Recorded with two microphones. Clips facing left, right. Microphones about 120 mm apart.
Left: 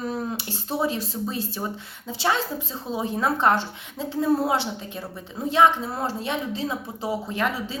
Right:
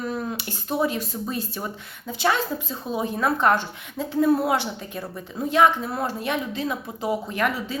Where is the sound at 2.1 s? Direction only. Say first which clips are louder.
Right 1 dB; 30° left (ahead or behind).